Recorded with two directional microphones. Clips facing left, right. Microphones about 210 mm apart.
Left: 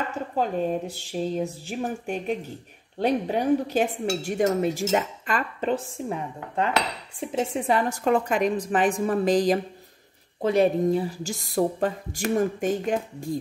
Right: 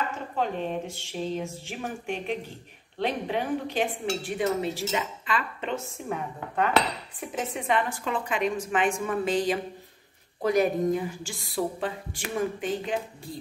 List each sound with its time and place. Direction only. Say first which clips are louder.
0.4 s a woman's voice: left 4 dB; 40° left (ahead or behind)
6.0 s a woman's voice: left 2 dB; 30° left (ahead or behind); by 13.3 s 45° left (ahead or behind)